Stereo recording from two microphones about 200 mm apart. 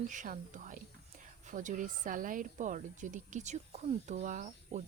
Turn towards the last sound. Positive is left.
turn(degrees=-40)  # may be behind; listen again after turning